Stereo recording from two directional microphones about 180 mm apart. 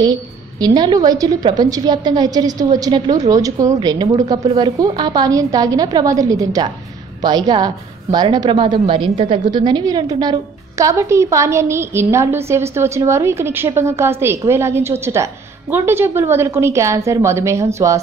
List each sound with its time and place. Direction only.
0.0 s a woman's voice: 20° right (ahead or behind)